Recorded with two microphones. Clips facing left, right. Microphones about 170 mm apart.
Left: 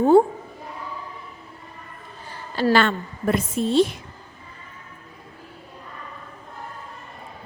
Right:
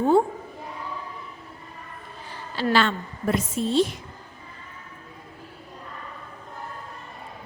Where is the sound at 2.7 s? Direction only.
55° left (ahead or behind).